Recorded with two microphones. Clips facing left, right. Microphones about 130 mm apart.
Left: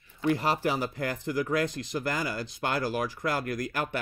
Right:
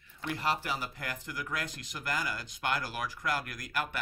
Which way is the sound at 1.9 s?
35° left (ahead or behind).